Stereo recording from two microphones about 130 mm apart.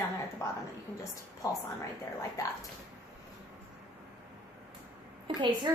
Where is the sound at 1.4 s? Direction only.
25° left (ahead or behind).